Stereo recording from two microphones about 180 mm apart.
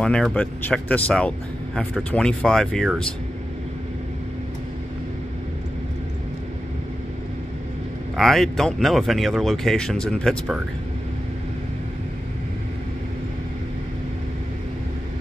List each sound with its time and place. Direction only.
0.0 s speech: 5° left (ahead or behind)
8.2 s speech: centre (ahead or behind)